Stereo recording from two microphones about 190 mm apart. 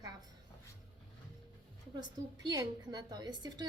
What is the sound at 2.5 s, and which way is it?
A woman's voice, 20° right (ahead or behind).